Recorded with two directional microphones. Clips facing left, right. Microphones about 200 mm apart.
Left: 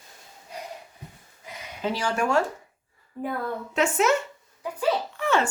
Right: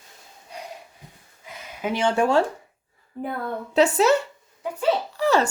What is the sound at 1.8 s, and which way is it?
Speech, 20° right (ahead or behind).